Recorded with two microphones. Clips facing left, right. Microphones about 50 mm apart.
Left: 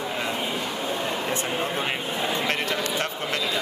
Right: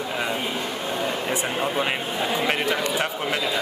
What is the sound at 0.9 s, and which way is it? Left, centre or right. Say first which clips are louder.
A man's voice: right 3 dB; centre.